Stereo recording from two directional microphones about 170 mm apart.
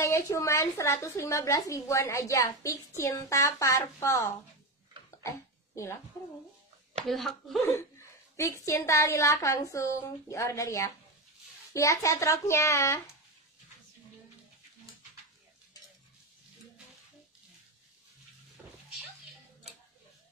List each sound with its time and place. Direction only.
0.0 s a woman's voice: 15° left (ahead or behind)
7.1 s a woman's voice: centre (ahead or behind)
8.4 s a woman's voice: 20° left (ahead or behind)